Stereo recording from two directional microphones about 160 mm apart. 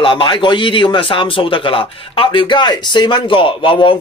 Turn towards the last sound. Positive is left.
turn(degrees=35)  # may be behind; listen again after turning